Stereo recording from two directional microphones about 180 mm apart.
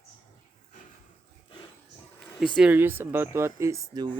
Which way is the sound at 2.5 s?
5° right (ahead or behind).